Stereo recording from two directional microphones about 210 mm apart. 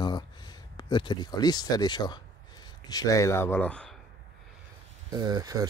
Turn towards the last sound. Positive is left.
turn(degrees=-20)  # may be behind; listen again after turning